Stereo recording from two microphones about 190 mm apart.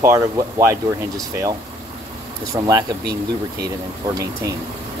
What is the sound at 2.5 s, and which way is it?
Speech, 20° right (ahead or behind).